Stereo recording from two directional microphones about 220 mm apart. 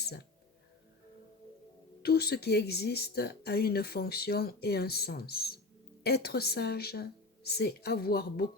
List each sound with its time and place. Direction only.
2.0 s speech: 45° left (ahead or behind)